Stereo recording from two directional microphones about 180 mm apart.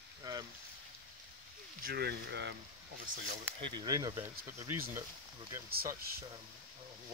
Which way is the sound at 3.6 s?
20° right (ahead or behind).